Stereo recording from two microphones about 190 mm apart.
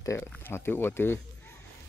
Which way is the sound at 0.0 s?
15° left (ahead or behind).